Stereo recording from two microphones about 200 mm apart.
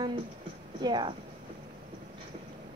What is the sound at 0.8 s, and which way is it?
Speech, 20° right (ahead or behind).